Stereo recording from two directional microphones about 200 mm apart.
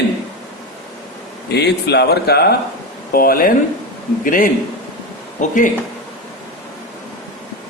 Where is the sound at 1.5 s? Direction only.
55° left (ahead or behind); by 5.5 s 40° left (ahead or behind).